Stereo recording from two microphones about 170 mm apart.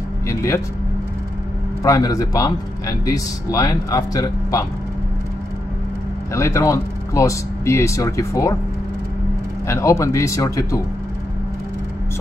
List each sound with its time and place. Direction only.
0.3 s speech: 20° left (ahead or behind)
1.8 s a man's voice: 20° left (ahead or behind)
6.3 s speech: 15° left (ahead or behind)
9.7 s speech: 15° left (ahead or behind)